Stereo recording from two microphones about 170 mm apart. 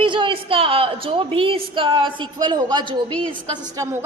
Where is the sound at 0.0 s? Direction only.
30° right (ahead or behind).